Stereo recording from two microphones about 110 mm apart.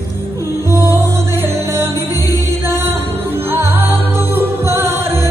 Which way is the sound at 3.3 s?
20° right (ahead or behind).